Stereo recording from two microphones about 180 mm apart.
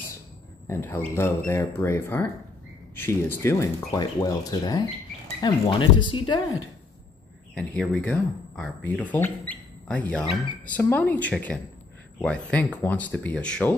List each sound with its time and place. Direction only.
0.7 s speech: 10° left (ahead or behind)
7.5 s speech: 5° left (ahead or behind)